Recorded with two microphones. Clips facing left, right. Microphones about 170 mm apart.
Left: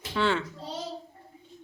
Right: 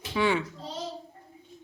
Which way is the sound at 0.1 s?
10° right (ahead or behind).